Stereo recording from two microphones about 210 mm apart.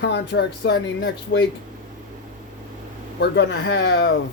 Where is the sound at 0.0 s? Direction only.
55° left (ahead or behind).